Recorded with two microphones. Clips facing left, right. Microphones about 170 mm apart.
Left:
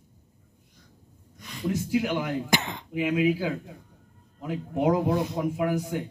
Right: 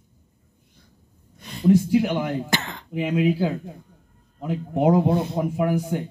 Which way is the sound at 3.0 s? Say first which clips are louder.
Right 3 dB; 30° right (ahead or behind).